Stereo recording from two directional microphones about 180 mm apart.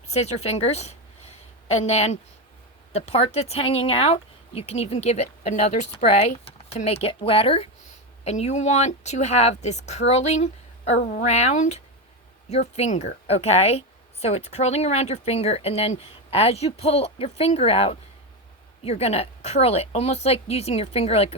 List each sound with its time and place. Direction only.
0.1 s a woman's voice: 35° left (ahead or behind)